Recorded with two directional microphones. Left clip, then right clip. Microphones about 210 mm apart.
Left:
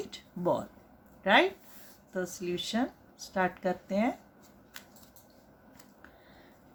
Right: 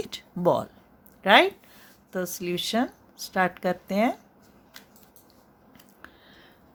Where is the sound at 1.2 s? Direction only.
50° right (ahead or behind).